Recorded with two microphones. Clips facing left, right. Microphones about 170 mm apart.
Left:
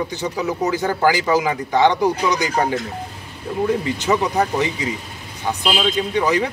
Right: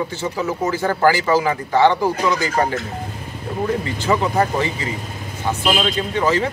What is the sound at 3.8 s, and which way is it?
Speech, 15° left (ahead or behind).